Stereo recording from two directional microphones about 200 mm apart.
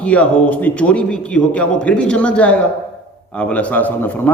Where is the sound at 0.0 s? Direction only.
5° left (ahead or behind).